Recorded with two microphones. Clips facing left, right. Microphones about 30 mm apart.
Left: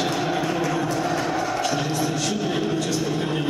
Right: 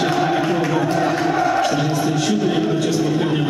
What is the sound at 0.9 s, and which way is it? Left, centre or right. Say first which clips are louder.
Chant: right 5 dB; right.